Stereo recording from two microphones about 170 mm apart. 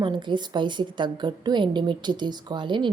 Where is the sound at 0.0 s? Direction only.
30° right (ahead or behind).